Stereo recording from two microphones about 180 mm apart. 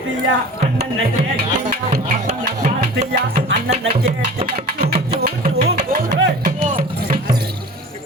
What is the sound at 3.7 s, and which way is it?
Speech, 35° right (ahead or behind).